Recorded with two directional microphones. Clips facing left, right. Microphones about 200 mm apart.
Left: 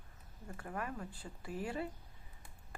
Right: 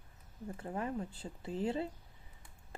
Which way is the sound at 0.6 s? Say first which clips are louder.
Right 4 dB; 25° right (ahead or behind).